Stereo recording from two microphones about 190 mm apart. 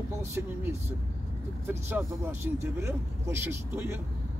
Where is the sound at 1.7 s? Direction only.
10° right (ahead or behind).